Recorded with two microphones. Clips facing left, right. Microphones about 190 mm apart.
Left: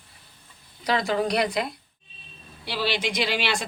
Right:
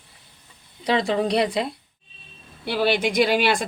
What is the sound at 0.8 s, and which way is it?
Speech, 25° right (ahead or behind).